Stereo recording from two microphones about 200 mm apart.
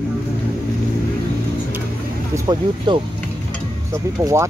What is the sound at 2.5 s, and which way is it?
Speech, 25° right (ahead or behind).